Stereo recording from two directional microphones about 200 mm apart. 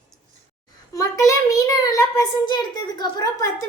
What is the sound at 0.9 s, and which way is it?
A child's voice, 15° left (ahead or behind).